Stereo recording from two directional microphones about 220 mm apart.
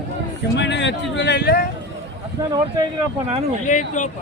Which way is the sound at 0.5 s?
55° left (ahead or behind).